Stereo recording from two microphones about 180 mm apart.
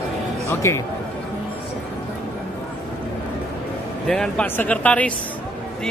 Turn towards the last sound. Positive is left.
turn(degrees=5)  # may be behind; listen again after turning